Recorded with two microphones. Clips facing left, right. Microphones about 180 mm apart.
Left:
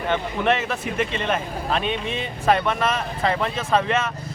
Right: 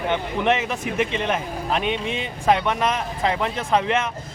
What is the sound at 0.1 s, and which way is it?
Speech, 15° right (ahead or behind).